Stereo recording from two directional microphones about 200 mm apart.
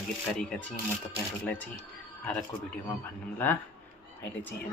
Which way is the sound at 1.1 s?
10° left (ahead or behind).